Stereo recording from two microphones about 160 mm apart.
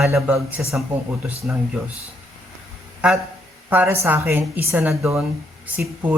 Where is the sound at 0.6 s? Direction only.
5° right (ahead or behind).